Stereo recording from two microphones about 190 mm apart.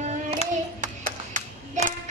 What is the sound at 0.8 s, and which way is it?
Music, 40° right (ahead or behind).